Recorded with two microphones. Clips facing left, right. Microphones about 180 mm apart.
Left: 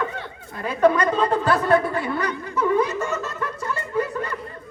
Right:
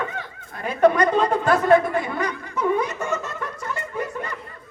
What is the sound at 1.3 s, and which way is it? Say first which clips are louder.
Speech: right 2 dB; 20° right (ahead or behind).